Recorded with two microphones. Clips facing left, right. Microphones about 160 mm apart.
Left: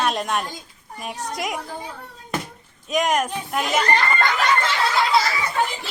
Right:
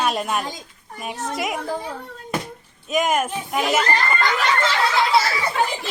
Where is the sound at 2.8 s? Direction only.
5° right (ahead or behind).